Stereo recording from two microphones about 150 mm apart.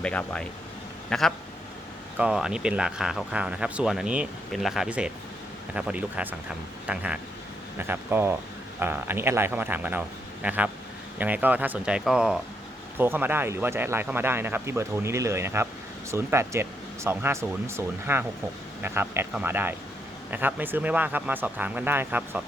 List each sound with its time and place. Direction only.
0.0 s speech: 10° left (ahead or behind); by 22.4 s 10° right (ahead or behind)